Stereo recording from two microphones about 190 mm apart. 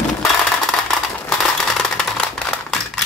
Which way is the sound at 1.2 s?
5° left (ahead or behind).